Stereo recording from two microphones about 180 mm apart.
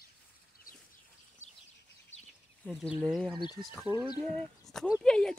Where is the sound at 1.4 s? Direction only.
40° left (ahead or behind).